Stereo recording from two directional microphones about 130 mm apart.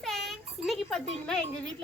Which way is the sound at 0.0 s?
5° left (ahead or behind).